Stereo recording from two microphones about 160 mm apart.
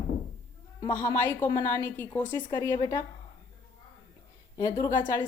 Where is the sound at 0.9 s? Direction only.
15° left (ahead or behind).